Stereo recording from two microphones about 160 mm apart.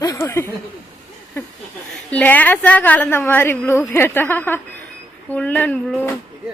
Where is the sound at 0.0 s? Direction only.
20° left (ahead or behind).